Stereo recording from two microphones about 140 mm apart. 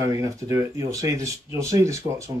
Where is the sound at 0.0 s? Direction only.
20° right (ahead or behind).